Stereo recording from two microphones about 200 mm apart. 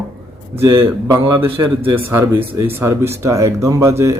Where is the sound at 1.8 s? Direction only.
25° right (ahead or behind).